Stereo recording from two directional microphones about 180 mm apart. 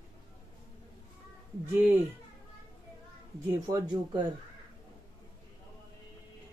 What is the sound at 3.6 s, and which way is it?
Speech, 20° right (ahead or behind).